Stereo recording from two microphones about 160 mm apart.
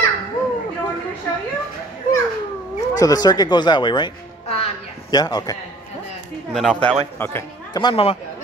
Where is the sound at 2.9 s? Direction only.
25° left (ahead or behind).